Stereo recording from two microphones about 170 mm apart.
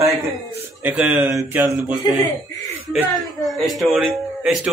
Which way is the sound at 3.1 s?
Centre (ahead or behind).